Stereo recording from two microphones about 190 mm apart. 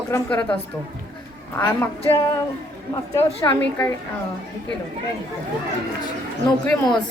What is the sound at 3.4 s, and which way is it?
Speech, 15° left (ahead or behind).